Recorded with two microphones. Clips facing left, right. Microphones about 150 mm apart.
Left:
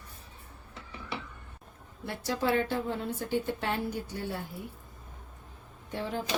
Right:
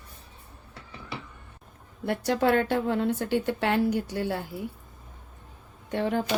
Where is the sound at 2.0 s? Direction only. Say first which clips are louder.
Right 6 dB; 65° right (ahead or behind); by 4.3 s 85° right.